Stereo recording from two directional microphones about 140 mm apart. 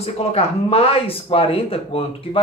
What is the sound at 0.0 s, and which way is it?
Speech, 45° left (ahead or behind).